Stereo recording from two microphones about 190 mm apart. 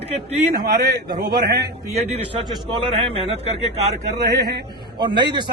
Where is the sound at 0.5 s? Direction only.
55° right (ahead or behind).